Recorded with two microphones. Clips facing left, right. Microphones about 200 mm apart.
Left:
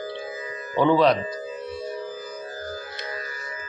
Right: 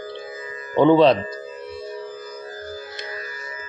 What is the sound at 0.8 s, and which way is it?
Speech, 25° right (ahead or behind).